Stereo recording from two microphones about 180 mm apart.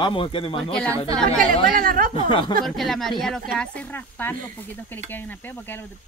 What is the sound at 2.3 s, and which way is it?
Speech, 25° left (ahead or behind).